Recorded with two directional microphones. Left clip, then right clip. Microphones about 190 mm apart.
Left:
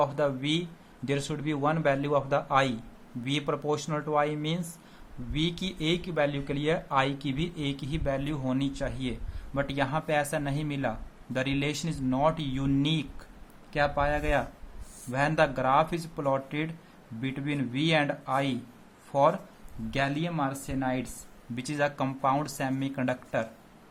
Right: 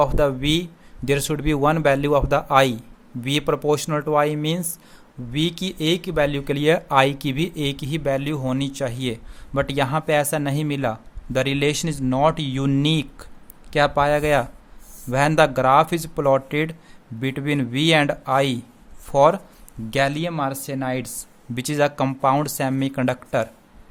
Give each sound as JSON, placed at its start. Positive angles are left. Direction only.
{"t": 0.0, "sound": "speech", "side_deg": -55}